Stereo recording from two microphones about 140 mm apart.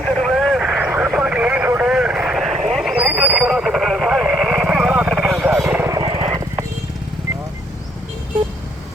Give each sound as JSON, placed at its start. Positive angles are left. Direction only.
{"t": 0.0, "sound": "vehicle", "side_deg": 5}
{"t": 5.9, "sound": "vehicle", "side_deg": -35}